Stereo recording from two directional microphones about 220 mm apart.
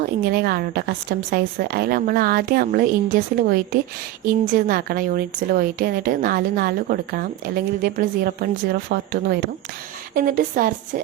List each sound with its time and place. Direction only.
0.3 s a woman's voice: 45° right (ahead or behind)